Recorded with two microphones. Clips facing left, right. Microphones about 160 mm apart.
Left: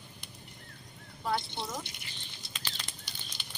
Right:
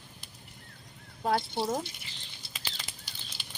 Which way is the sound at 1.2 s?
50° right (ahead or behind).